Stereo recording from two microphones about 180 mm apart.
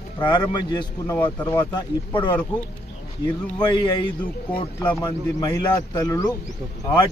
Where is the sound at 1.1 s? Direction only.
10° left (ahead or behind).